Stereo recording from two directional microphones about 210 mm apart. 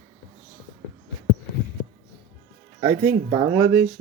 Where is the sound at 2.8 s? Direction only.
50° right (ahead or behind).